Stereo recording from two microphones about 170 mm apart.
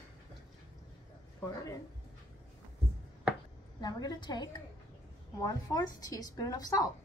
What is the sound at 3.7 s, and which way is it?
Speech, 25° left (ahead or behind).